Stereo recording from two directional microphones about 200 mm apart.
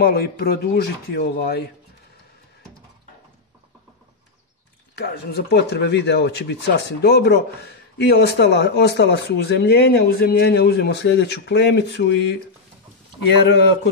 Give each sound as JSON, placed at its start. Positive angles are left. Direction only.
{"t": 0.0, "sound": "speech", "side_deg": 50}
{"t": 4.9, "sound": "speech", "side_deg": 55}